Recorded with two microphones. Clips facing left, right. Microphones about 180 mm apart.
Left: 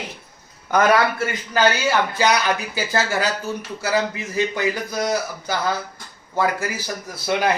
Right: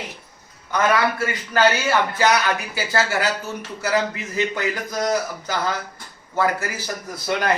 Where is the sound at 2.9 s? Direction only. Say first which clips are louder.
Even; 15° left (ahead or behind).